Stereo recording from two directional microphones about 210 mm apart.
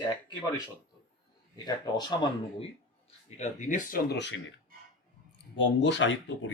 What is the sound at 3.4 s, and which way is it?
Speech, 35° left (ahead or behind).